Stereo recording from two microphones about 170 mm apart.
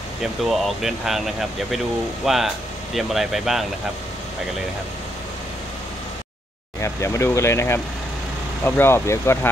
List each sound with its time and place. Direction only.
0.2 s speech: centre (ahead or behind)
6.8 s speech: 15° left (ahead or behind)